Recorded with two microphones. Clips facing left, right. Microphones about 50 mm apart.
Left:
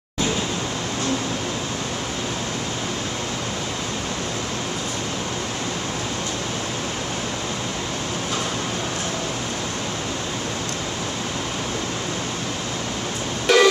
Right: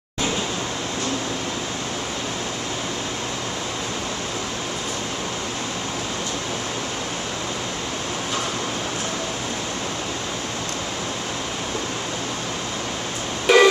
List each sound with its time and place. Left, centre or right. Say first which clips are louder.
13.5 s music: right 2 dB; centre